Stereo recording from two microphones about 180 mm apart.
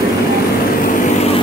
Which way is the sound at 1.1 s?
35° left (ahead or behind).